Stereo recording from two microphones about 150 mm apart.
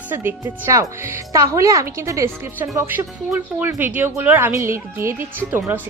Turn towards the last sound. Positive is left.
turn(degrees=-15)  # may be behind; listen again after turning